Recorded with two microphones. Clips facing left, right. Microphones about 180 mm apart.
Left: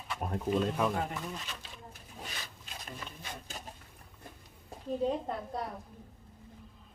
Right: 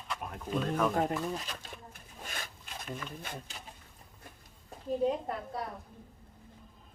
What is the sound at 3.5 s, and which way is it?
Speech, 40° left (ahead or behind).